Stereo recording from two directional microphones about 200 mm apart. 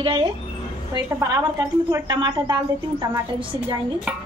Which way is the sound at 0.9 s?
15° right (ahead or behind).